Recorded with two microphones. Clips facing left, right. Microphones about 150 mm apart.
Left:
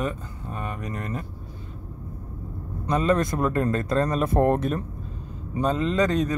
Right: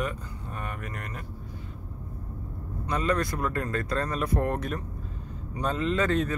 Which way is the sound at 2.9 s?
25° left (ahead or behind).